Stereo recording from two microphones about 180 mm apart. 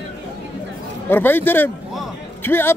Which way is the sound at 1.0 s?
10° left (ahead or behind).